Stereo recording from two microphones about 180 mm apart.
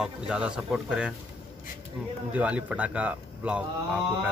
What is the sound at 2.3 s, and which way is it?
Speech, 10° right (ahead or behind).